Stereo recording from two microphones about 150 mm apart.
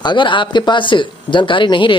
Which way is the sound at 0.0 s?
30° left (ahead or behind).